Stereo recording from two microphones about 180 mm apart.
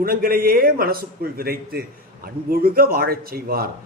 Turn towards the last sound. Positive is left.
turn(degrees=-55)  # may be behind; listen again after turning